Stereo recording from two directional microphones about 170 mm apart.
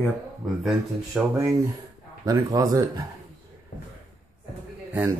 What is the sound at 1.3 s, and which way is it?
Speech, 15° right (ahead or behind).